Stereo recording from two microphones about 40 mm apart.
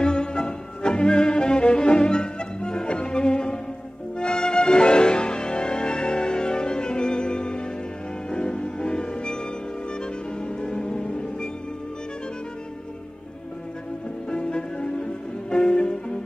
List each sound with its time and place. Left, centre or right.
0.0 s music: left
10.4 s music: left
14.3 s music: left